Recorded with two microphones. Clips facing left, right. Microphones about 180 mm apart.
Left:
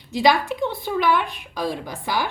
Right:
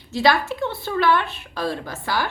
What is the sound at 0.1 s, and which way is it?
A woman's voice, 15° left (ahead or behind).